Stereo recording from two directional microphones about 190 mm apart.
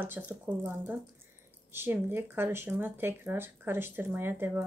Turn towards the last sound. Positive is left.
turn(degrees=-10)  # may be behind; listen again after turning